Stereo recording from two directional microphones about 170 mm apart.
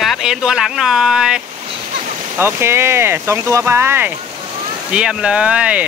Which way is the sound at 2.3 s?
15° right (ahead or behind).